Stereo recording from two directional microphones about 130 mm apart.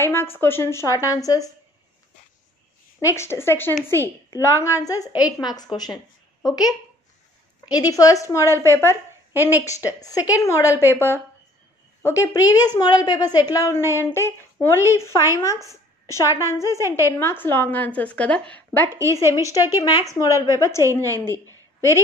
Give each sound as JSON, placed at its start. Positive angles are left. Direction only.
{"t": 0.0, "sound": "a woman's voice", "side_deg": 20}
{"t": 3.0, "sound": "a woman's voice", "side_deg": 20}
{"t": 7.7, "sound": "a woman's voice", "side_deg": 30}
{"t": 9.3, "sound": "a woman's voice", "side_deg": -15}
{"t": 9.9, "sound": "a woman's voice", "side_deg": 30}
{"t": 19.5, "sound": "a woman's voice", "side_deg": 30}